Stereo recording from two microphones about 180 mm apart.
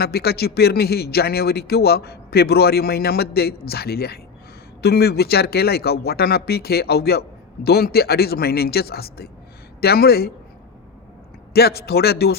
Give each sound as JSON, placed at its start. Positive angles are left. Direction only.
{"t": 0.0, "sound": "a man's voice", "side_deg": 60}
{"t": 11.5, "sound": "a man's voice", "side_deg": 60}